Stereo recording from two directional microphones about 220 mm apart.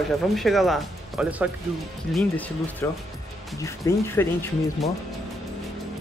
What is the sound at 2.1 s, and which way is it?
Speech, 5° left (ahead or behind).